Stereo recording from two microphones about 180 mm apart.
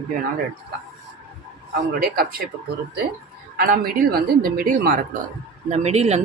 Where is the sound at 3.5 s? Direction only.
60° right (ahead or behind).